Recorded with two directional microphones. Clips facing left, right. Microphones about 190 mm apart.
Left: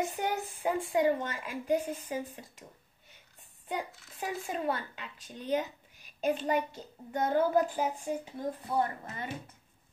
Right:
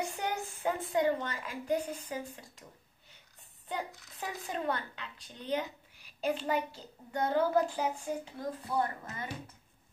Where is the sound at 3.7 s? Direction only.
15° left (ahead or behind).